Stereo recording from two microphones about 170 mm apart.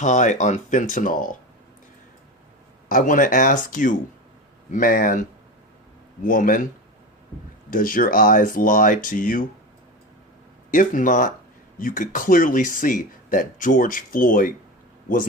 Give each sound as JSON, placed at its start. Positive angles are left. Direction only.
{"t": 0.0, "sound": "speech", "side_deg": 45}
{"t": 2.9, "sound": "speech", "side_deg": 50}
{"t": 6.2, "sound": "speech", "side_deg": 55}
{"t": 7.7, "sound": "speech", "side_deg": 55}
{"t": 10.7, "sound": "speech", "side_deg": 55}